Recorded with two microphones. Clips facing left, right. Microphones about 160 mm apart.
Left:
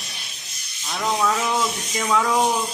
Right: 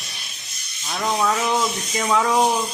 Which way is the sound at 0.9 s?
10° right (ahead or behind).